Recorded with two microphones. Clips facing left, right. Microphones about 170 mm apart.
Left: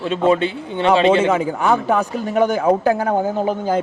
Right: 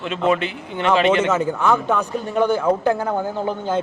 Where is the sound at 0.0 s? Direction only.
30° left (ahead or behind).